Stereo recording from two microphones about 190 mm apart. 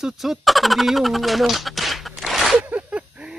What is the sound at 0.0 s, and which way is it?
Speech, centre (ahead or behind).